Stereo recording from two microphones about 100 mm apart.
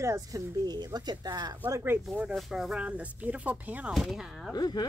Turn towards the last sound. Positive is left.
turn(degrees=45)  # may be behind; listen again after turning